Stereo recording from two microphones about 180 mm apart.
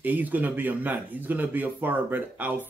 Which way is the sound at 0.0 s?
10° right (ahead or behind).